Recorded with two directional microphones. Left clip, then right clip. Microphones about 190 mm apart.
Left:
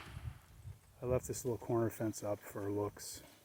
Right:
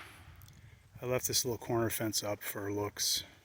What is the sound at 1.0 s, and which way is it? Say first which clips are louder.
Speech: right 4 dB; 15° right (ahead or behind).